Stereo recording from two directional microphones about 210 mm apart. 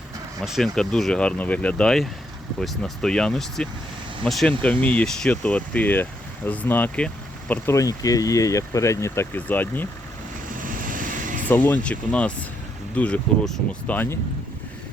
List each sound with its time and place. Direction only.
0.4 s speech: centre (ahead or behind)
10.6 s vehicle: 40° right (ahead or behind)
11.4 s speech: 10° left (ahead or behind)